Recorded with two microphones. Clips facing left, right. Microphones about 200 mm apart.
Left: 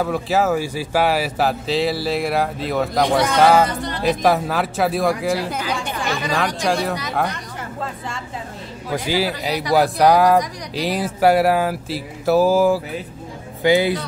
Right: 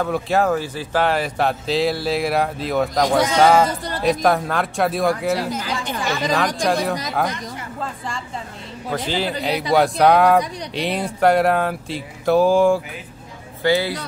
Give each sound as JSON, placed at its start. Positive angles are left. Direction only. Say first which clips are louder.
{"t": 0.0, "sound": "speech", "louder": "even", "side_deg": 5}
{"t": 5.5, "sound": "speech", "louder": "left 1 dB", "side_deg": 60}
{"t": 5.8, "sound": "speech", "louder": "right 1 dB", "side_deg": 0}
{"t": 8.9, "sound": "a man's voice", "louder": "left 2 dB", "side_deg": 10}
{"t": 13.6, "sound": "a man's voice", "louder": "left 3 dB", "side_deg": 15}